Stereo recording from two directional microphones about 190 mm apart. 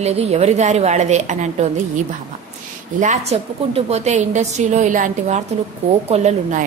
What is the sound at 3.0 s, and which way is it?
A woman's voice, 35° right (ahead or behind).